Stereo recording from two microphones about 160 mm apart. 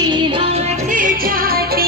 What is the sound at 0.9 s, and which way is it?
Music, 60° right (ahead or behind).